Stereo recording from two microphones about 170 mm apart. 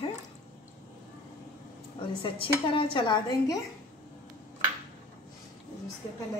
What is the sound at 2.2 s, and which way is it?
Speech, 30° left (ahead or behind).